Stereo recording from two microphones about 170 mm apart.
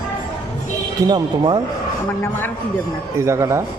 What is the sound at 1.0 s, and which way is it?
Speech, 25° right (ahead or behind).